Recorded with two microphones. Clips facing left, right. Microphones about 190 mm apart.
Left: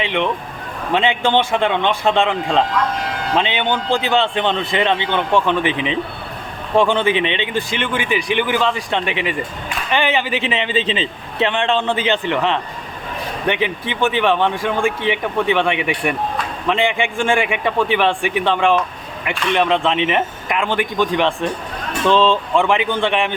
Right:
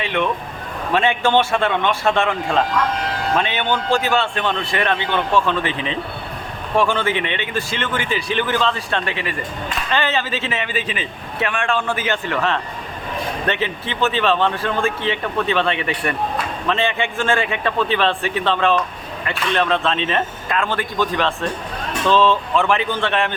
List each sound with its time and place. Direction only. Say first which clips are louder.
0.0 s speech: left 1 dB; 20° left (ahead or behind)